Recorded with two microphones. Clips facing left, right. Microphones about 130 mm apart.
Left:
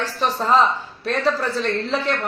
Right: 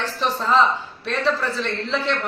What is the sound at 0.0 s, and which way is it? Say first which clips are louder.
A woman's voice: left 1 dB; 40° left (ahead or behind).